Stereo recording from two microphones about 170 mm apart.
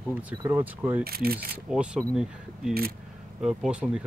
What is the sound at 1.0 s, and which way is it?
Speech, 60° right (ahead or behind).